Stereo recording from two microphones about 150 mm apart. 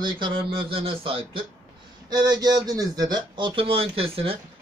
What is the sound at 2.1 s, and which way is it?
Speech, 25° right (ahead or behind).